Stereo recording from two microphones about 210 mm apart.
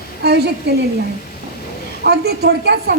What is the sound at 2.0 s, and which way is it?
Speech, 50° right (ahead or behind).